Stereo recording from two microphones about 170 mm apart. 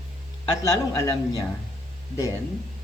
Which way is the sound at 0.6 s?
20° left (ahead or behind).